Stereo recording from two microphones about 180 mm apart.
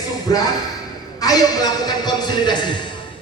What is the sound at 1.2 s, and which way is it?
A man's voice, 20° left (ahead or behind).